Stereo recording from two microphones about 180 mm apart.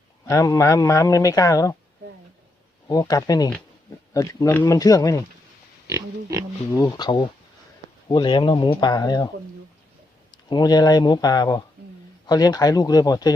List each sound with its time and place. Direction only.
0.3 s a man's voice: 20° left (ahead or behind)
2.8 s speech: 20° left (ahead or behind)
6.7 s speech: 20° left (ahead or behind)
10.3 s speech: 20° left (ahead or behind)